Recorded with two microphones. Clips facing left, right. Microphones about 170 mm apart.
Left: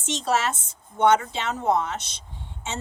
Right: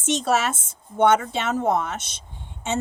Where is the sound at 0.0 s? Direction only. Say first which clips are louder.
Right 3 dB; 50° right (ahead or behind).